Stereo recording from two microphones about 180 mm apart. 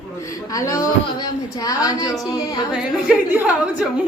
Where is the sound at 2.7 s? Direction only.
5° right (ahead or behind).